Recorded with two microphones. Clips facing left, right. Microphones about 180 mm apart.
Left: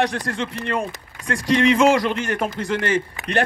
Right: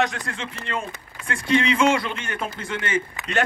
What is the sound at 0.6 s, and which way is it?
Speech, 60° left (ahead or behind).